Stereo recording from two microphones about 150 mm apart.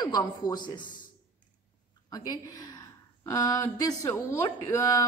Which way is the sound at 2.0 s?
25° left (ahead or behind).